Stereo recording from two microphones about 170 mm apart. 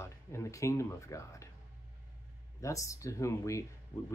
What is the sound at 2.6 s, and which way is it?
Speech, 20° left (ahead or behind).